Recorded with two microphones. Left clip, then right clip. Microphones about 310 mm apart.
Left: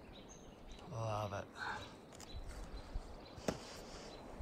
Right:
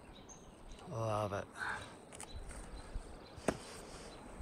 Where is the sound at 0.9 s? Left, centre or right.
Centre.